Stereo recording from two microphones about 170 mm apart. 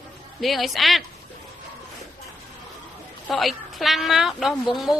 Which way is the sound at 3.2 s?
Centre (ahead or behind).